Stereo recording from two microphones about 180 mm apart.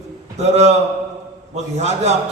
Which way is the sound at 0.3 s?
40° right (ahead or behind).